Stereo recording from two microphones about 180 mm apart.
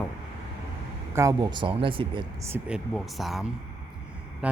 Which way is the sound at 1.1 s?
20° right (ahead or behind).